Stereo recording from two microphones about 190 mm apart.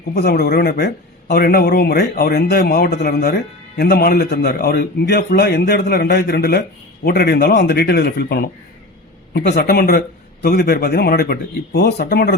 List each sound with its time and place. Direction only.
0.1 s speech: 55° left (ahead or behind)